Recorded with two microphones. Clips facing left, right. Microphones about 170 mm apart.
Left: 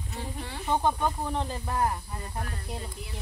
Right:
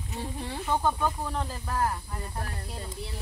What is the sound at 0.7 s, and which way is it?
Speech, 15° left (ahead or behind).